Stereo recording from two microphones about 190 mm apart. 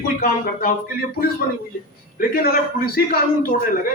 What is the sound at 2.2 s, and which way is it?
Speech, 50° left (ahead or behind).